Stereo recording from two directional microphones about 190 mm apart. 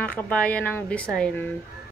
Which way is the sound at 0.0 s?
5° left (ahead or behind).